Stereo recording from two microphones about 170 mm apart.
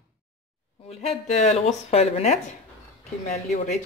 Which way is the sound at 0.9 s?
40° left (ahead or behind).